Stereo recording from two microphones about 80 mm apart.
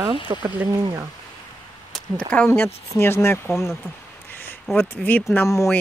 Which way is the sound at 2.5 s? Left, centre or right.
Left.